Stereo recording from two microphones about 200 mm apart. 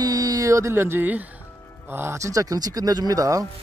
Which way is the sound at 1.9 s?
10° right (ahead or behind).